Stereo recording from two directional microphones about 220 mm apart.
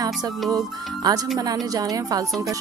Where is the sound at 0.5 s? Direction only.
15° right (ahead or behind).